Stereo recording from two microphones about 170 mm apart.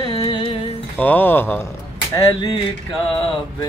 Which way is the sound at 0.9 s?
10° left (ahead or behind).